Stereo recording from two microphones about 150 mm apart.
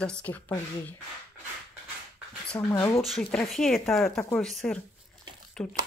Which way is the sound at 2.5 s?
25° left (ahead or behind).